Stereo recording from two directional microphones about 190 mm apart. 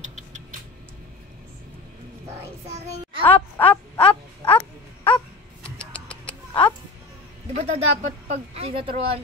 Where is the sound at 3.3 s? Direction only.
10° left (ahead or behind).